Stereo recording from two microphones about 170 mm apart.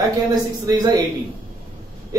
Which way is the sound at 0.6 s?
20° right (ahead or behind).